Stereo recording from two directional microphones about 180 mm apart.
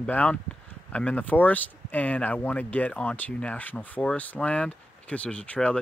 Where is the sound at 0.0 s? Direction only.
10° left (ahead or behind).